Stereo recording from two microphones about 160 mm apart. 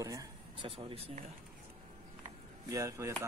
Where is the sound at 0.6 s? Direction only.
40° right (ahead or behind).